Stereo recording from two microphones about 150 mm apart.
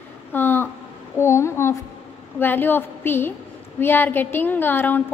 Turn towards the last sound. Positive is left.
turn(degrees=15)  # may be behind; listen again after turning